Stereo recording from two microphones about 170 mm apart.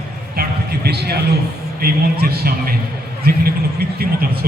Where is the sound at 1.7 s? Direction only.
65° right (ahead or behind).